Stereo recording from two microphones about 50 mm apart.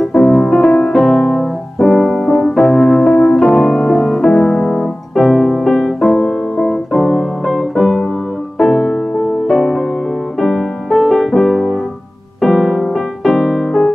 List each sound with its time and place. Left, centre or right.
0.3 s music: centre
3.3 s music: centre
4.6 s piano: centre
8.5 s music: centre